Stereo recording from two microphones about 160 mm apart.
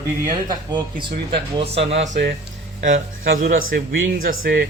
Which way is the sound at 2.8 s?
60° right (ahead or behind).